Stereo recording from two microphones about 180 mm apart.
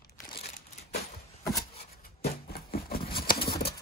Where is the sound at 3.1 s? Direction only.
55° left (ahead or behind).